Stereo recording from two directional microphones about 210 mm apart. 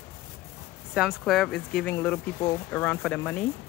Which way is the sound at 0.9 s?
Centre (ahead or behind).